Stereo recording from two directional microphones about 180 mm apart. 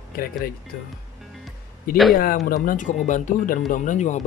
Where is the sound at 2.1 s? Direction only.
55° left (ahead or behind).